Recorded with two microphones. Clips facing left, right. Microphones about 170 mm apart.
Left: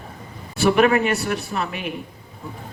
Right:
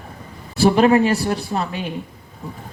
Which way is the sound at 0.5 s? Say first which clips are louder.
Right 3 dB; 30° right (ahead or behind).